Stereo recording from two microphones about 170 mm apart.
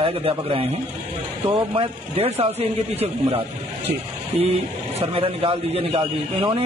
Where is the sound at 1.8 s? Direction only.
35° right (ahead or behind).